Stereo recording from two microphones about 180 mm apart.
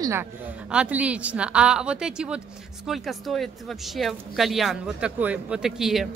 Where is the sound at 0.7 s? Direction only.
5° right (ahead or behind).